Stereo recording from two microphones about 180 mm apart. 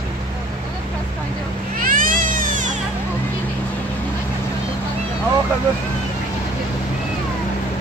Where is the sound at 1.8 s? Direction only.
50° right (ahead or behind).